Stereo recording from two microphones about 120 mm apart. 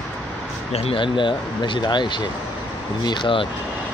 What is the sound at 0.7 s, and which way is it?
Speech, 50° left (ahead or behind).